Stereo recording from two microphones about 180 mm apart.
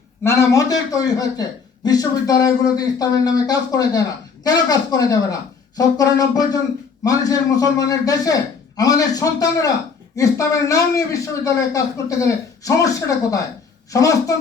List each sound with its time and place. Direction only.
0.3 s a man's voice: 15° left (ahead or behind)